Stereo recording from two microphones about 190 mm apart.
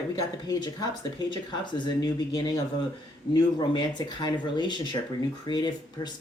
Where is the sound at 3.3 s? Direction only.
20° left (ahead or behind).